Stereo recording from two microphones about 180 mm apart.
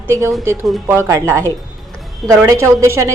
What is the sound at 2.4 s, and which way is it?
Speech, 15° right (ahead or behind).